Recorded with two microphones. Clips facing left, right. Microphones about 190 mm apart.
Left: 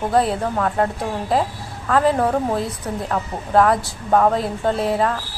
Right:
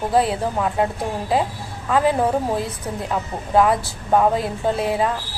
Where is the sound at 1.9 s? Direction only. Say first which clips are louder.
Left 1 dB; 5° right (ahead or behind).